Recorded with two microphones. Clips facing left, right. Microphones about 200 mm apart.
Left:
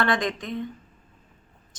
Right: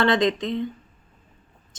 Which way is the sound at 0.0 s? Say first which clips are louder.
Right 5 dB; 25° right (ahead or behind).